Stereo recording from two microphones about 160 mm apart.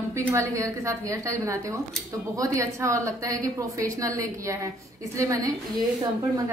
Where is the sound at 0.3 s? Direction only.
20° right (ahead or behind).